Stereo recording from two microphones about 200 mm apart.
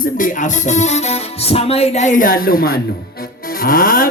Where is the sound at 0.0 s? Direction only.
40° left (ahead or behind).